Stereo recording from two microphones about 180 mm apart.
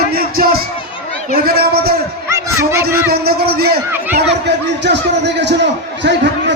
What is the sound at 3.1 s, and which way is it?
Speech, 60° right (ahead or behind).